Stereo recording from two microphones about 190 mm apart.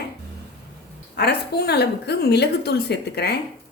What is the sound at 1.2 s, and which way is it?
A woman's voice, 60° left (ahead or behind).